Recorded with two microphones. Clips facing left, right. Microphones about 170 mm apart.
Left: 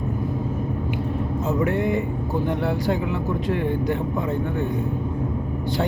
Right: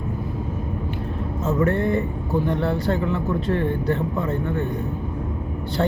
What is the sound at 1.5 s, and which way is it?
Speech, 15° left (ahead or behind).